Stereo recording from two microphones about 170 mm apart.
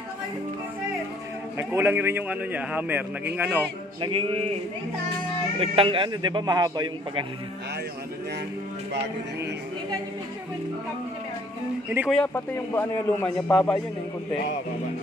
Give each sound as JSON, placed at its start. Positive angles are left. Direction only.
{"t": 1.6, "sound": "speech", "side_deg": -10}
{"t": 4.0, "sound": "speech", "side_deg": -30}
{"t": 5.6, "sound": "a man's voice", "side_deg": -30}
{"t": 12.1, "sound": "a man's voice", "side_deg": 5}